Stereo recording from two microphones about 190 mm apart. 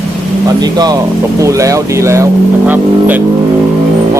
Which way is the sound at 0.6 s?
20° right (ahead or behind).